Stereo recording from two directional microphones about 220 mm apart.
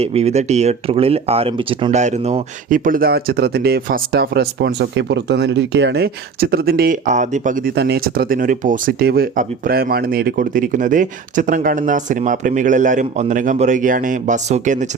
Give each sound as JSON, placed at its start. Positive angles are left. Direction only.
{"t": 0.0, "sound": "speech", "side_deg": -30}